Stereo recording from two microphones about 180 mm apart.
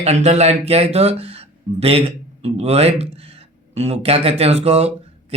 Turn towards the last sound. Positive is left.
turn(degrees=-35)  # may be behind; listen again after turning